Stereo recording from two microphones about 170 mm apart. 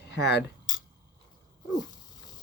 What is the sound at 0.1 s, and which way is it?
Speech, 85° left.